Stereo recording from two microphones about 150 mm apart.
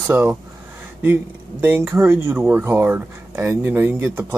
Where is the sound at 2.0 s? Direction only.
15° right (ahead or behind).